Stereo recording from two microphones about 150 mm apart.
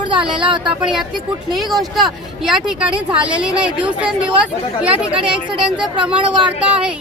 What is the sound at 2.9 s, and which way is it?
Speech, 35° right (ahead or behind).